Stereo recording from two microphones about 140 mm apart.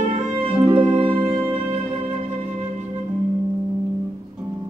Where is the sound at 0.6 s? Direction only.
40° right (ahead or behind).